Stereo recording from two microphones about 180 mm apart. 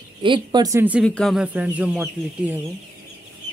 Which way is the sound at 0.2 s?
25° right (ahead or behind).